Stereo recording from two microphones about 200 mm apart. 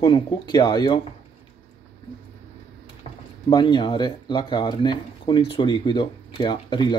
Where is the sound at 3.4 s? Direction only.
25° left (ahead or behind).